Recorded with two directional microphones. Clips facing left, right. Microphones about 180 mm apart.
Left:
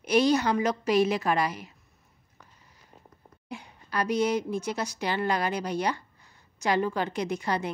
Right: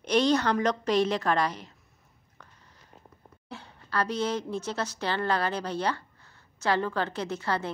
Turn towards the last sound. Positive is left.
turn(degrees=15)  # may be behind; listen again after turning